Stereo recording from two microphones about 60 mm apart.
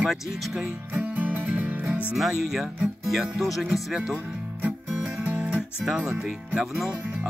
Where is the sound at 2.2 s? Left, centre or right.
Centre.